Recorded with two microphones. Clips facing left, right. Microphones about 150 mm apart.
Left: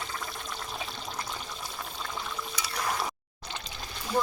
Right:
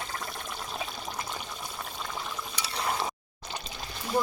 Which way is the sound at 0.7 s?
5° right (ahead or behind).